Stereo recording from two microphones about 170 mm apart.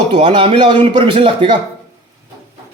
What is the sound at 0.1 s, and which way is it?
Speech, 30° right (ahead or behind).